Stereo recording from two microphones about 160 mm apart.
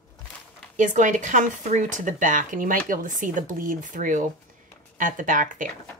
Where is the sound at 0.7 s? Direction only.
50° right (ahead or behind).